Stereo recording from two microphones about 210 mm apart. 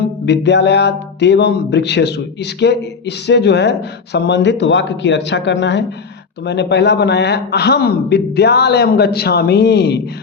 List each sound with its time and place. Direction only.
0.3 s music: 55° left (ahead or behind)
6.4 s a man's voice: 55° left (ahead or behind)